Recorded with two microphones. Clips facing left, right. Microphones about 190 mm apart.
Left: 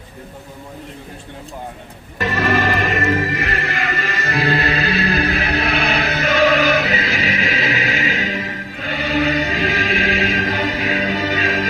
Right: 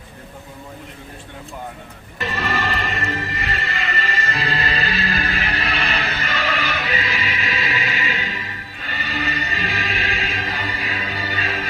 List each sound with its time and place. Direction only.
2.2 s music: 85° left
4.8 s music: 70° left (ahead or behind)
6.4 s music: 45° left (ahead or behind)
6.7 s music: 85° left
9.1 s chant: 45° left (ahead or behind)
9.4 s music: 90° left
11.0 s music: 45° left (ahead or behind)